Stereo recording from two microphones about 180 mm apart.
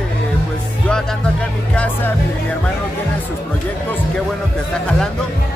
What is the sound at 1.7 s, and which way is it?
Speech, 10° left (ahead or behind).